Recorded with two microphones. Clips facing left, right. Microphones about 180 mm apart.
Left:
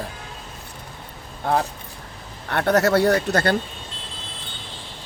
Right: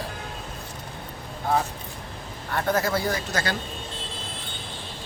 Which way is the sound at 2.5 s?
70° left (ahead or behind).